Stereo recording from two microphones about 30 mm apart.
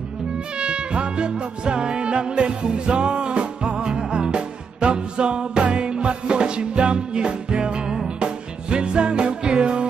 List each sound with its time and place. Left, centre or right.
0.6 s music: right